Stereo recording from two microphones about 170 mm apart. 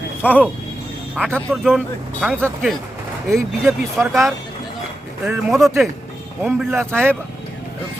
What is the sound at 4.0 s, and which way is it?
Speech, centre (ahead or behind).